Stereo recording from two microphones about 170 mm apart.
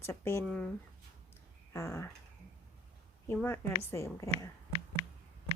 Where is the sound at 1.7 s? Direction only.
15° left (ahead or behind).